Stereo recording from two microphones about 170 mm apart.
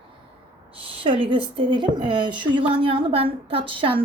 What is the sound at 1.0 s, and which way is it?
A woman's voice, 30° right (ahead or behind).